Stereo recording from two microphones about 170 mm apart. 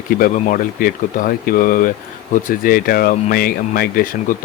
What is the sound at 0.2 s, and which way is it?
Speech, 50° left (ahead or behind).